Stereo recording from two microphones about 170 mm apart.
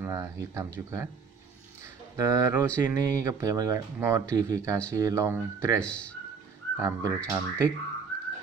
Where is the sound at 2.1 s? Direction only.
20° right (ahead or behind).